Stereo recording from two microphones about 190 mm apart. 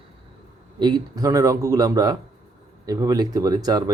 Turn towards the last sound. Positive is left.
turn(degrees=-20)  # may be behind; listen again after turning